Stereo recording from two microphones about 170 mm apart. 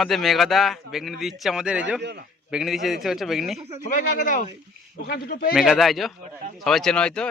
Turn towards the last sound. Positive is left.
turn(degrees=5)  # may be behind; listen again after turning